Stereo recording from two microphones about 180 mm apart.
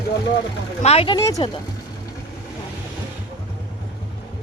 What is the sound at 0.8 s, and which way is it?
Speech, 35° left (ahead or behind).